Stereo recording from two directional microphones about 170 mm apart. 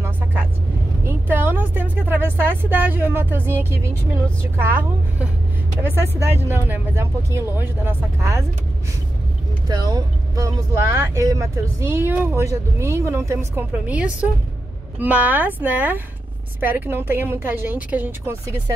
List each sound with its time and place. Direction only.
1.0 s speech: 15° right (ahead or behind)
9.7 s speech: 25° right (ahead or behind)